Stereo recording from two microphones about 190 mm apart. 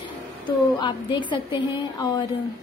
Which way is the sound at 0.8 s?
25° left (ahead or behind).